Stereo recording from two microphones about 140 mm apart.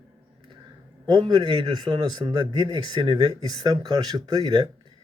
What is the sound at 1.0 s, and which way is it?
A man's voice, 35° right (ahead or behind).